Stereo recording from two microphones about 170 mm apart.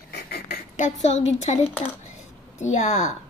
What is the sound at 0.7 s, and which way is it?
Speech, 45° left (ahead or behind).